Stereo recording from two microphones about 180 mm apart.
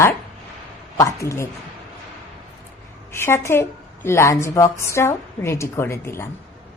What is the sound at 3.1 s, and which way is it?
A woman's voice, 15° left (ahead or behind).